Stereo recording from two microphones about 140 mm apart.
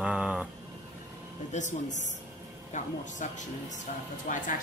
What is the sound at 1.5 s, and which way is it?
Speech, 60° left (ahead or behind).